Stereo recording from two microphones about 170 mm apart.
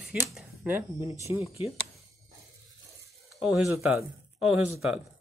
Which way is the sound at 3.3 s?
Centre (ahead or behind).